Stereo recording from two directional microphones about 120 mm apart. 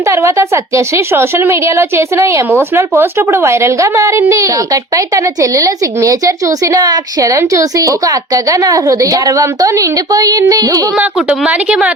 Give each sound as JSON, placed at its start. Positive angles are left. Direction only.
{"t": 0.0, "sound": "a woman's voice", "side_deg": -25}
{"t": 10.9, "sound": "a woman's voice", "side_deg": -10}